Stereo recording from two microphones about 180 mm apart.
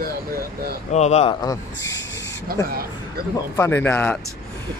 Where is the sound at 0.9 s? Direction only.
40° left (ahead or behind).